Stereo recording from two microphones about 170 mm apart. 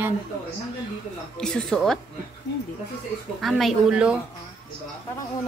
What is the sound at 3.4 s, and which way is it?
Speech, 5° right (ahead or behind).